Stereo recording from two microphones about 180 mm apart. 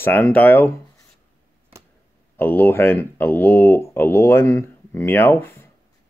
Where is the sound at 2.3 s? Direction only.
10° left (ahead or behind).